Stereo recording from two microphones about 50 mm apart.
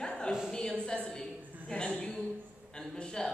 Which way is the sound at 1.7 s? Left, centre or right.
Left.